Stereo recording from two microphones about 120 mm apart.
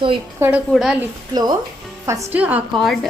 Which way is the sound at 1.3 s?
35° right (ahead or behind).